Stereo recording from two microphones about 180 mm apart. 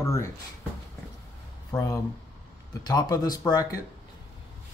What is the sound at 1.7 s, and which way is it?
Speech, 15° left (ahead or behind).